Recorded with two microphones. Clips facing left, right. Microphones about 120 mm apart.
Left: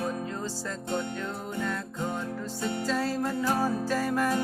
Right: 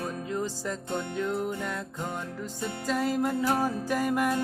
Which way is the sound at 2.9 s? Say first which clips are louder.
Right 4 dB; 15° right (ahead or behind).